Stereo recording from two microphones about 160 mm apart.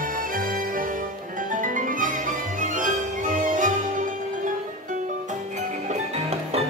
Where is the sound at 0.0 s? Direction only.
60° right (ahead or behind).